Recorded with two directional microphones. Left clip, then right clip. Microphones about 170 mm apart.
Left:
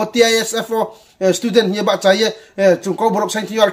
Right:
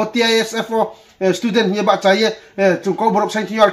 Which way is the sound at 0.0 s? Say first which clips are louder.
Left 2 dB; 15° left (ahead or behind).